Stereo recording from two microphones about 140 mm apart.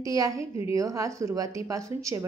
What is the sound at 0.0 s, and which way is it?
A woman's voice, 25° right (ahead or behind).